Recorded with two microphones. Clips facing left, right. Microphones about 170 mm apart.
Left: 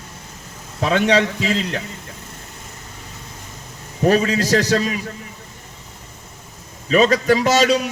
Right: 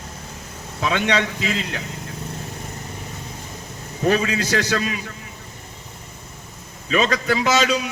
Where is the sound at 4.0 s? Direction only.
40° left (ahead or behind).